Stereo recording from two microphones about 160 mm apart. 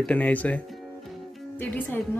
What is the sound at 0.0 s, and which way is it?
Speech, 10° left (ahead or behind).